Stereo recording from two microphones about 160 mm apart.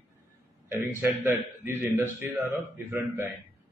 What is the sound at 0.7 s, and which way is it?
A man's voice, 10° right (ahead or behind).